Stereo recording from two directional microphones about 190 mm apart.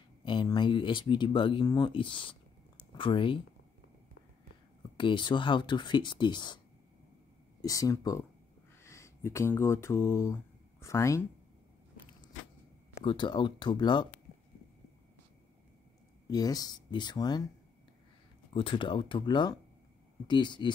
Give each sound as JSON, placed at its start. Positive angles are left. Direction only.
{"t": 0.2, "sound": "speech", "side_deg": 25}
{"t": 4.9, "sound": "speech", "side_deg": 25}
{"t": 7.6, "sound": "speech", "side_deg": 20}
{"t": 13.0, "sound": "speech", "side_deg": 25}
{"t": 16.3, "sound": "speech", "side_deg": 20}
{"t": 18.5, "sound": "speech", "side_deg": 25}